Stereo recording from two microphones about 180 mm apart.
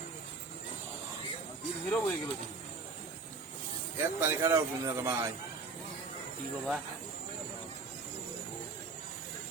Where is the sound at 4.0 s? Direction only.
15° right (ahead or behind).